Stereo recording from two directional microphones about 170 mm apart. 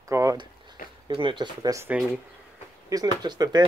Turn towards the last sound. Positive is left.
turn(degrees=-25)  # may be behind; listen again after turning